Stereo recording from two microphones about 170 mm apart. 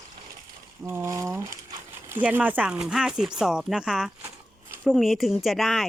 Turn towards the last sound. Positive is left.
turn(degrees=0)  # may be behind; listen again after turning